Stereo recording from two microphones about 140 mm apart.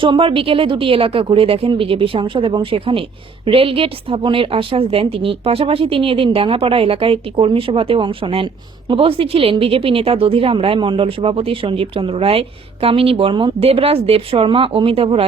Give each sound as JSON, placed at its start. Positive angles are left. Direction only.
{"t": 0.0, "sound": "a woman's voice", "side_deg": -40}